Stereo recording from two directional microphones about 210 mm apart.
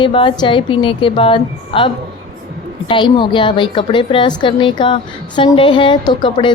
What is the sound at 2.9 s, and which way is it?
A woman's voice, 20° left (ahead or behind).